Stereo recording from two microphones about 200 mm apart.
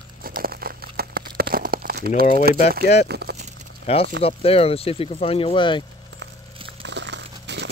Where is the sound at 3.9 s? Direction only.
30° left (ahead or behind).